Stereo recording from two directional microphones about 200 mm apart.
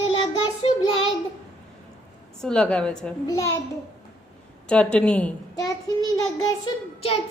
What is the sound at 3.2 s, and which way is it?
Child singing, 15° left (ahead or behind).